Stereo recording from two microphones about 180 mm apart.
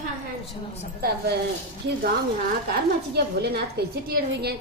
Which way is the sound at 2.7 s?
65° right (ahead or behind).